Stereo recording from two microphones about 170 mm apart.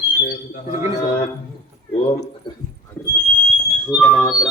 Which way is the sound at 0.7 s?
20° right (ahead or behind).